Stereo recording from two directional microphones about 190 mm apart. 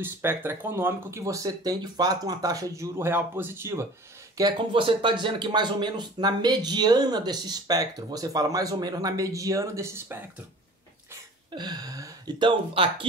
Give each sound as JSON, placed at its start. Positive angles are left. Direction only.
{"t": 0.0, "sound": "speech", "side_deg": -10}
{"t": 11.5, "sound": "speech", "side_deg": -20}